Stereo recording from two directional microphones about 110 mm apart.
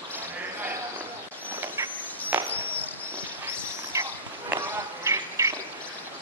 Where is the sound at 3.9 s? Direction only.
25° right (ahead or behind).